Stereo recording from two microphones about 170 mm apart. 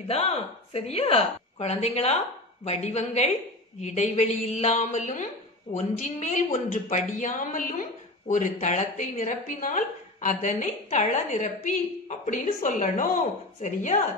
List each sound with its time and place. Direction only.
0.1 s a woman's voice: 35° left (ahead or behind)